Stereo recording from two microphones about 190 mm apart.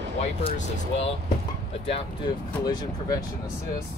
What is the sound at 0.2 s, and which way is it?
Speech, 30° left (ahead or behind).